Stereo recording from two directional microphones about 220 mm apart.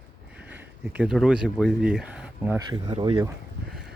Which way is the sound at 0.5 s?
5° right (ahead or behind).